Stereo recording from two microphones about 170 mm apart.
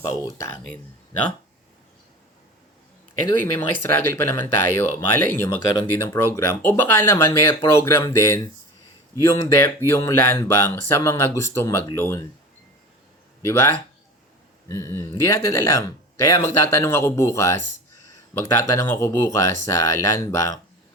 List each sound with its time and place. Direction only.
3.2 s speech: 15° left (ahead or behind)
5.5 s speech: 25° left (ahead or behind)
5.8 s speech: 10° left (ahead or behind)
13.4 s speech: 15° left (ahead or behind)
14.7 s speech: 20° left (ahead or behind)